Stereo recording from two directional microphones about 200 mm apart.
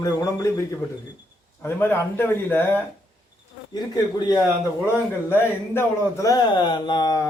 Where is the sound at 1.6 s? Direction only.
10° left (ahead or behind).